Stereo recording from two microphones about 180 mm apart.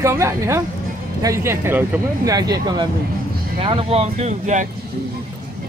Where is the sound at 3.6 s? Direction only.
30° right (ahead or behind).